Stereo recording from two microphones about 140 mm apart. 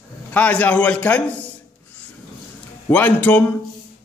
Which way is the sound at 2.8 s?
15° left (ahead or behind).